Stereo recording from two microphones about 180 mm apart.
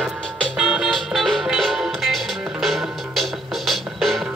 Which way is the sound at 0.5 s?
5° right (ahead or behind).